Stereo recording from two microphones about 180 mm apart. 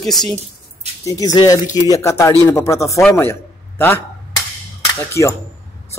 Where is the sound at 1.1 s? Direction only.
20° left (ahead or behind).